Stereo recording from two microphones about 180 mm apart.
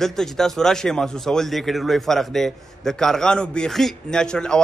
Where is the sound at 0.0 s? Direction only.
Centre (ahead or behind).